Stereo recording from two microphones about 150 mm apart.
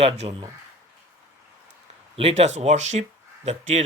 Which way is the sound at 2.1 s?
45° right (ahead or behind).